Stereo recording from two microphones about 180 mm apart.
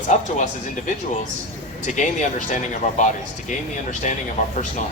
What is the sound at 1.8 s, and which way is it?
Speech, 45° left (ahead or behind).